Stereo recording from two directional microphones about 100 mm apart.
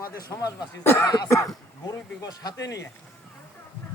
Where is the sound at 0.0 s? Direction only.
35° left (ahead or behind).